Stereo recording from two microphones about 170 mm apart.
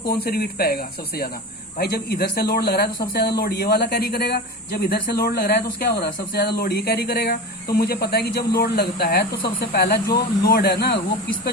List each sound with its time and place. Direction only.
0.1 s speech: 65° left (ahead or behind)